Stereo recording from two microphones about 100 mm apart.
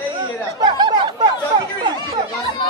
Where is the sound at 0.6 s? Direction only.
45° right (ahead or behind).